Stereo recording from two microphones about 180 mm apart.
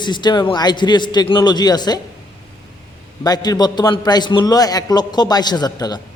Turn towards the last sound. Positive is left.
turn(degrees=20)  # may be behind; listen again after turning